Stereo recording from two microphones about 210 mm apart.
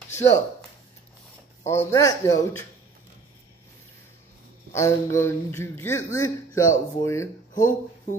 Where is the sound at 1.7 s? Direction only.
15° left (ahead or behind).